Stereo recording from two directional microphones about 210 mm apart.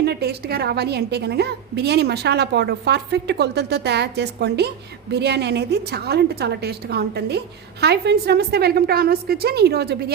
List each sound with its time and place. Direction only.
0.0 s a woman's voice: 50° right (ahead or behind)